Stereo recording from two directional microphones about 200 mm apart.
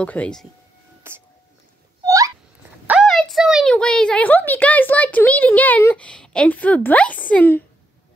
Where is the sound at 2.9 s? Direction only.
Centre (ahead or behind).